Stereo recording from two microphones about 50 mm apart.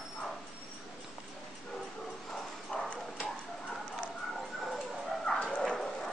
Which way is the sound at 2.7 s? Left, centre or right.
Left.